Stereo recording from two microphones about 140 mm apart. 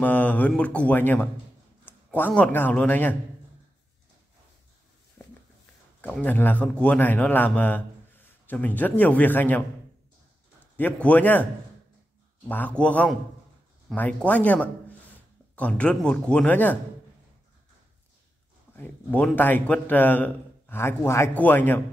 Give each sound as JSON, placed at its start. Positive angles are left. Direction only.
{"t": 0.0, "sound": "a man's voice", "side_deg": 10}
{"t": 5.2, "sound": "a sound", "side_deg": 15}
{"t": 5.9, "sound": "a man's voice", "side_deg": 10}
{"t": 12.4, "sound": "a man's voice", "side_deg": 10}
{"t": 18.8, "sound": "a man's voice", "side_deg": 10}